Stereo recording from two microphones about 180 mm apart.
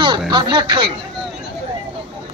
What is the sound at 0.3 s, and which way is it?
Speech, 25° right (ahead or behind).